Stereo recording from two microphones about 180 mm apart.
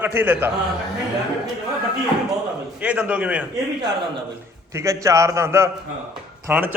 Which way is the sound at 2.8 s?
5° right (ahead or behind).